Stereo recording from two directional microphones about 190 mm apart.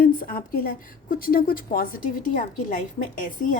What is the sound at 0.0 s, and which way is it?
A woman's voice, 50° left (ahead or behind).